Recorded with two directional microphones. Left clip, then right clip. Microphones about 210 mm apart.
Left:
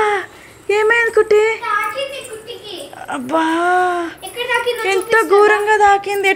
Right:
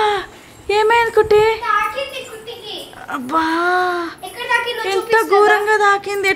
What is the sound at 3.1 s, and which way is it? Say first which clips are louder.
Speech: left 1 dB; 5° left (ahead or behind).